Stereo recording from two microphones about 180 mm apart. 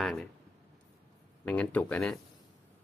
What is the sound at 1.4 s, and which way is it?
Speech, 5° left (ahead or behind).